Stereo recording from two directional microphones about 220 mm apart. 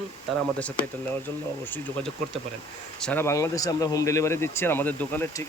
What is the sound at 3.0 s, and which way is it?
Speech, 10° left (ahead or behind).